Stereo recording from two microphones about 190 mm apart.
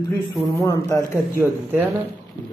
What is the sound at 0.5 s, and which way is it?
Speech, 15° left (ahead or behind).